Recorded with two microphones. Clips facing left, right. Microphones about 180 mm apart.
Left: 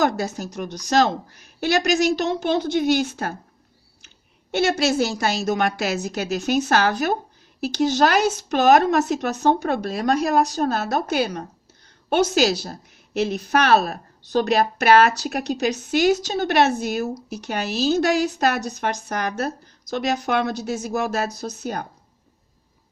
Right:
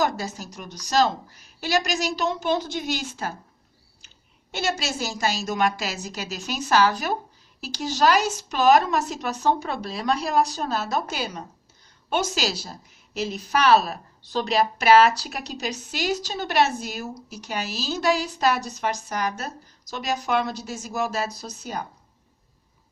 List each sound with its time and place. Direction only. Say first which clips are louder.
0.0 s a woman's voice: left 4 dB; 60° left (ahead or behind)
4.5 s a woman's voice: left 8 dB; 60° left (ahead or behind)